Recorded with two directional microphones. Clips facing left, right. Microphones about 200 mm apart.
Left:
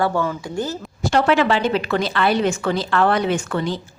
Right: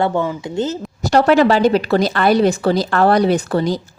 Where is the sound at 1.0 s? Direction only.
40° right (ahead or behind).